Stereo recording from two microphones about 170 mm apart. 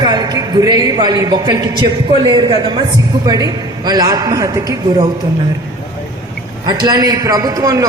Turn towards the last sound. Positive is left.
turn(degrees=-20)  # may be behind; listen again after turning